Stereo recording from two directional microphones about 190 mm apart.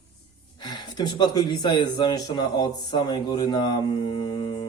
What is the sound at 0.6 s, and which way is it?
Speech, 20° left (ahead or behind).